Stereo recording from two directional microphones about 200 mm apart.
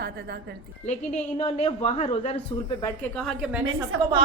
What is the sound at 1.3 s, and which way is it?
A man's voice, 30° left (ahead or behind).